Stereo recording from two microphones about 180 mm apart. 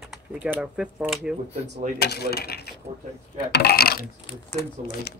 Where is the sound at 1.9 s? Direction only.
65° left (ahead or behind).